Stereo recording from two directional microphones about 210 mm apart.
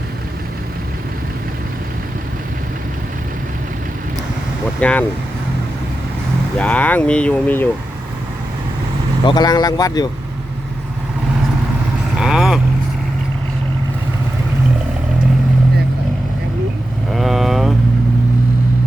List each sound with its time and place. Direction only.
4.8 s speech: 5° left (ahead or behind)
6.6 s speech: 5° left (ahead or behind)
9.2 s speech: 20° left (ahead or behind)
12.2 s vehicle: centre (ahead or behind)
17.1 s vehicle: centre (ahead or behind)